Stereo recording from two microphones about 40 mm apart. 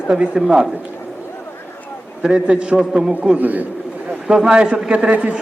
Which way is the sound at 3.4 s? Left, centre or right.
Right.